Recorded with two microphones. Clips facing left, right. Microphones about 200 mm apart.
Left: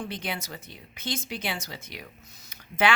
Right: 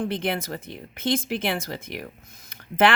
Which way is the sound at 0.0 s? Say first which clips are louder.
Right 8 dB; 55° right (ahead or behind).